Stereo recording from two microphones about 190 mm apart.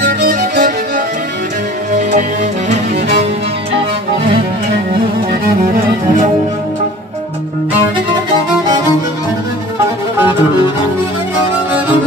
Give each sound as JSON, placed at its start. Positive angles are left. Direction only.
{"t": 0.0, "sound": "music", "side_deg": -50}